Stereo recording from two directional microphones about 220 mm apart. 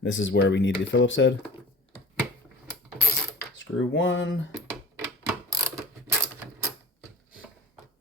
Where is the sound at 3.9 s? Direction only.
55° left (ahead or behind).